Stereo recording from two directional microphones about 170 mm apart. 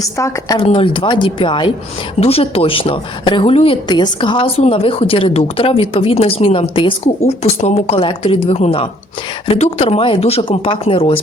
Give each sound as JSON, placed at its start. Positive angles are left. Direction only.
{"t": 0.2, "sound": "speech", "side_deg": 25}